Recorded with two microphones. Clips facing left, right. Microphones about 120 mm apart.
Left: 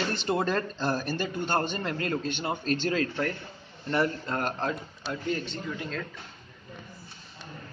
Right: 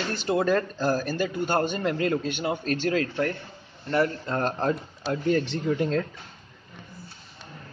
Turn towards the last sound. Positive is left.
turn(degrees=-45)  # may be behind; listen again after turning